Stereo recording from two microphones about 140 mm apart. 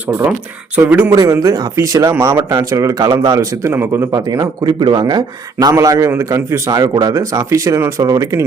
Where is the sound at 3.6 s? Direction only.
15° right (ahead or behind).